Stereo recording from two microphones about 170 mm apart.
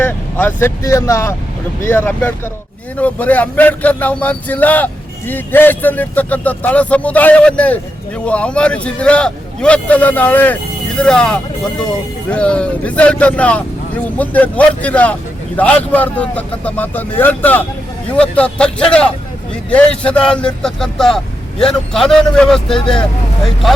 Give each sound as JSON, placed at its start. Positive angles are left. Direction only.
{"t": 0.0, "sound": "speech", "side_deg": 10}